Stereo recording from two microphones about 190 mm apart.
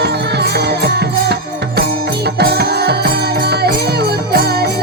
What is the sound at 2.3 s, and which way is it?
Music, 60° right (ahead or behind).